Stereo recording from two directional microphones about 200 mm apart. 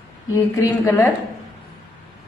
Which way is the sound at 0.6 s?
15° left (ahead or behind).